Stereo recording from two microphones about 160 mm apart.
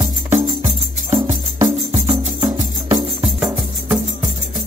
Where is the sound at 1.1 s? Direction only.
30° right (ahead or behind).